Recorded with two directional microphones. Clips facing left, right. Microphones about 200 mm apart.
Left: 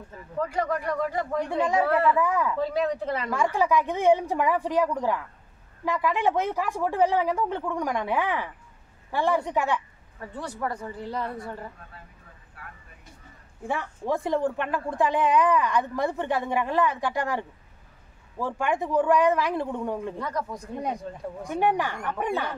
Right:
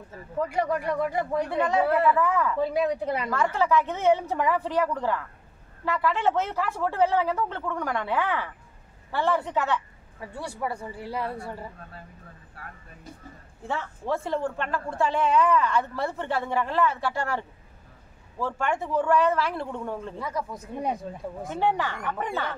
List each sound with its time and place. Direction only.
0.5 s a woman's voice: 15° right (ahead or behind)
1.5 s a woman's voice: 10° left (ahead or behind)
1.9 s a woman's voice: 10° right (ahead or behind)
2.1 s a woman's voice: 15° left (ahead or behind)
2.6 s a woman's voice: 10° right (ahead or behind)
3.3 s a woman's voice: 15° left (ahead or behind)
10.2 s a woman's voice: 10° right (ahead or behind)
13.7 s a woman's voice: 15° left (ahead or behind)
20.2 s speech: 5° right (ahead or behind)
21.5 s a woman's voice: 15° left (ahead or behind)